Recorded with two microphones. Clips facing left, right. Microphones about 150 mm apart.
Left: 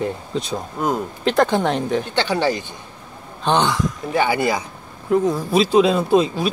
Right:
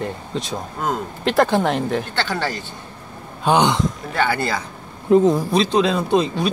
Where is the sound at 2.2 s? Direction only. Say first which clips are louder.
Left 4 dB; 15° left (ahead or behind).